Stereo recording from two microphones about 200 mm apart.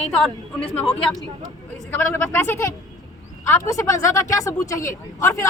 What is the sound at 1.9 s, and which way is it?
Speech, 15° left (ahead or behind).